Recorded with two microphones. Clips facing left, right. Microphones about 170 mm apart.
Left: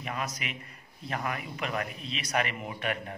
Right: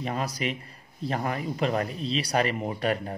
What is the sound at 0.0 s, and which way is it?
A man's voice, 35° right (ahead or behind).